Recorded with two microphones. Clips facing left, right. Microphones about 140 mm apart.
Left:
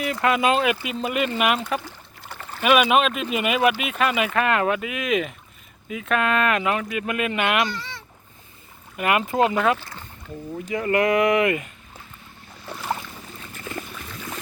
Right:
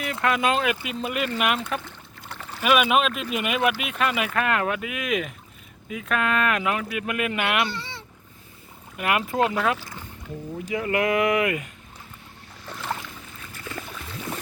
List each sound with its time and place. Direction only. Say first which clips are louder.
0.0 s speech: left 3 dB; 5° left (ahead or behind)
7.7 s speech: left 1 dB; 25° right (ahead or behind)
9.0 s speech: left 3 dB; centre (ahead or behind)
12.7 s boat: left 2 dB; 10° left (ahead or behind)
13.4 s a sound: left 2 dB; 20° left (ahead or behind)